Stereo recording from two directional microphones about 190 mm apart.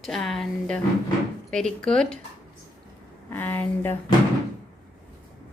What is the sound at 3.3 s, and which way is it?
Speech, 10° left (ahead or behind).